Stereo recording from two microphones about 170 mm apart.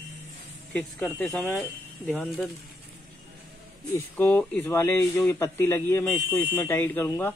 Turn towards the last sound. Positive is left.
turn(degrees=15)  # may be behind; listen again after turning